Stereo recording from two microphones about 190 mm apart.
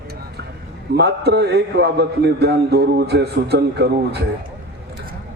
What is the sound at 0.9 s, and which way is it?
A man's voice, 60° right (ahead or behind).